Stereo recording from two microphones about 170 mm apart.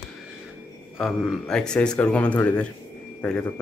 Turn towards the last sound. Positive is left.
turn(degrees=10)  # may be behind; listen again after turning